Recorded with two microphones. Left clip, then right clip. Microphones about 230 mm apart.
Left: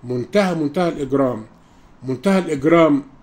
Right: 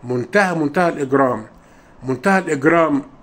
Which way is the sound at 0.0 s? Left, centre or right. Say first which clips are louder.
Right 2 dB; centre.